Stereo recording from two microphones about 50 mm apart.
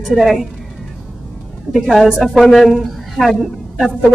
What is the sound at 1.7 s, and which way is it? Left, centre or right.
A woman's voice, centre.